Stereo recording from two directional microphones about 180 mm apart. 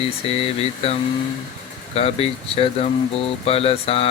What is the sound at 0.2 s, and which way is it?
Mantra, 30° left (ahead or behind).